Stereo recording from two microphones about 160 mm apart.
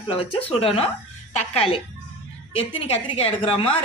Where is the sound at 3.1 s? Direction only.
30° left (ahead or behind).